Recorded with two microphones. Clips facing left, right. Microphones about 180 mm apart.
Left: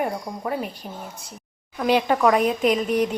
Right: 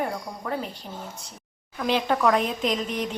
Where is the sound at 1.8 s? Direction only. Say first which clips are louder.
Left 4 dB; 10° left (ahead or behind).